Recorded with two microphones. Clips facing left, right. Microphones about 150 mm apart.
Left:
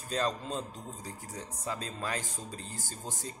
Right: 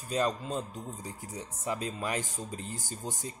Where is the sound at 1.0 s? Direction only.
15° right (ahead or behind).